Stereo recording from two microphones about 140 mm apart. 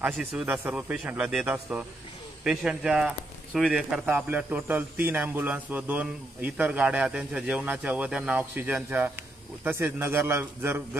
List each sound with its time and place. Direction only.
0.0 s speech: 10° right (ahead or behind)